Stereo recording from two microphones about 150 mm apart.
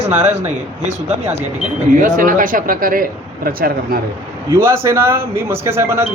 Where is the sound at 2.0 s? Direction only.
65° right (ahead or behind); by 4.0 s 80° right.